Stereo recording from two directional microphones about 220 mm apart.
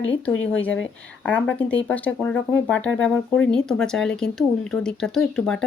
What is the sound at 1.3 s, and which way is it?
Speech, 5° left (ahead or behind).